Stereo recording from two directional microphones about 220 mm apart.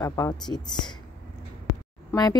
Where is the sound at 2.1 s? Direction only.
15° left (ahead or behind).